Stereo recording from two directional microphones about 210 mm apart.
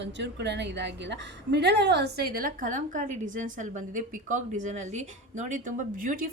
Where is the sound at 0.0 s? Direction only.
55° right (ahead or behind).